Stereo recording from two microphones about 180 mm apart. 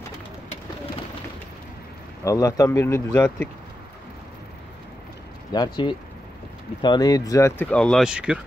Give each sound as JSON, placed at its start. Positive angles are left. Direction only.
{"t": 2.2, "sound": "speech", "side_deg": 20}
{"t": 5.5, "sound": "speech", "side_deg": 25}